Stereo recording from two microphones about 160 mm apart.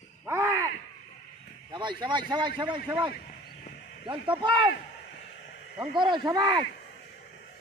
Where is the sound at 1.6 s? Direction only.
30° right (ahead or behind).